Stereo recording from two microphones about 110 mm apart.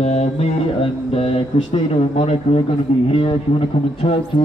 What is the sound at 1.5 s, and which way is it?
Speech, 90° left.